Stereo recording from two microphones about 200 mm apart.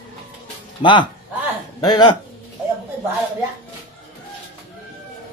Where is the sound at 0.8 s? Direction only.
25° left (ahead or behind).